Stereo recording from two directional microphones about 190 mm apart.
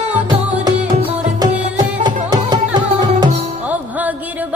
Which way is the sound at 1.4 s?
20° right (ahead or behind).